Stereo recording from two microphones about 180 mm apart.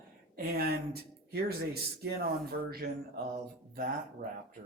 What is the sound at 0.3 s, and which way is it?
Speech, 55° right (ahead or behind).